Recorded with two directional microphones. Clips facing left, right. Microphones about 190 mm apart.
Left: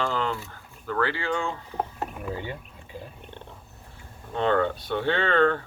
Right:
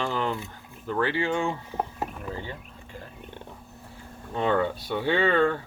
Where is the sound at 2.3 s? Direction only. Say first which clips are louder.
Left 2 dB; 15° left (ahead or behind).